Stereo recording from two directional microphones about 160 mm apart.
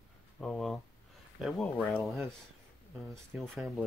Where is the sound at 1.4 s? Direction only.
5° left (ahead or behind).